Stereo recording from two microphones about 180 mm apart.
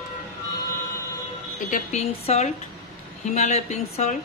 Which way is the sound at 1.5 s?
40° left (ahead or behind).